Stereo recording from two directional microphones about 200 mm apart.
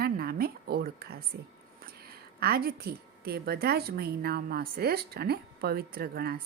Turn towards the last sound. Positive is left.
turn(degrees=-50)  # may be behind; listen again after turning